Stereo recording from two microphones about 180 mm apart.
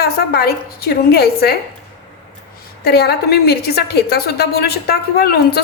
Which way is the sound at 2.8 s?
65° left (ahead or behind).